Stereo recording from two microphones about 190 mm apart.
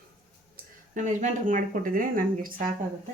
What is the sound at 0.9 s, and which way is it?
Speech, 40° right (ahead or behind).